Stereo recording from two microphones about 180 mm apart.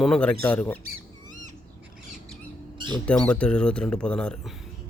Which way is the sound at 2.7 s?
25° right (ahead or behind).